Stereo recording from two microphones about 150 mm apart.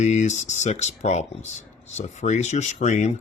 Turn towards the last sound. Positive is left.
turn(degrees=50)  # may be behind; listen again after turning